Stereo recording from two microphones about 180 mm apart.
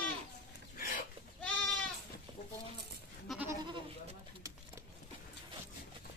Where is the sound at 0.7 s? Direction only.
50° left (ahead or behind).